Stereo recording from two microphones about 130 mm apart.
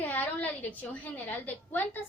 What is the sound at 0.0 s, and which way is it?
A woman's voice, 15° left (ahead or behind).